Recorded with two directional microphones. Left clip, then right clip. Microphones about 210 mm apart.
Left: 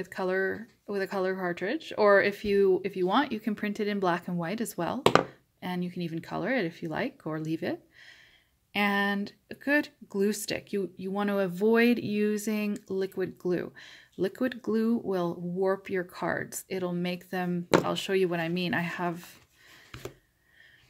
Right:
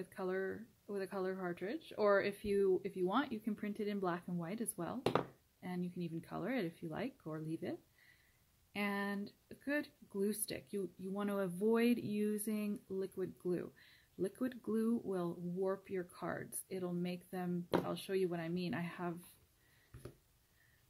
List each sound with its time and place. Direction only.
0.0 s speech: 5° left (ahead or behind)